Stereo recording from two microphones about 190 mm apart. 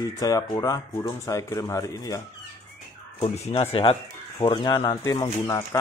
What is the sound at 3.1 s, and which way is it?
Speech, 35° left (ahead or behind).